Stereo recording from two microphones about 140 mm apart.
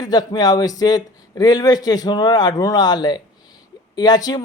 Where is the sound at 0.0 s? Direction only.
30° left (ahead or behind).